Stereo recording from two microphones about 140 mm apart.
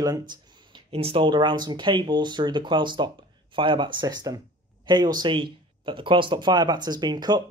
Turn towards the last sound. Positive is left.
turn(degrees=-30)  # may be behind; listen again after turning